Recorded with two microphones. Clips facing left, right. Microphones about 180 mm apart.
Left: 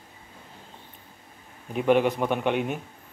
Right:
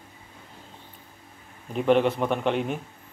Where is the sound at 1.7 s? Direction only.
5° left (ahead or behind).